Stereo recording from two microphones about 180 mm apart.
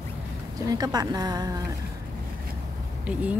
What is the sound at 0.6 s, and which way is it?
Speech, 20° right (ahead or behind).